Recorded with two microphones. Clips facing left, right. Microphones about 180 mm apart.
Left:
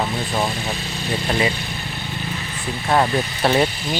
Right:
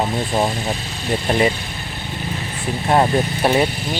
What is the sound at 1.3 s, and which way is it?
Speech, 25° right (ahead or behind).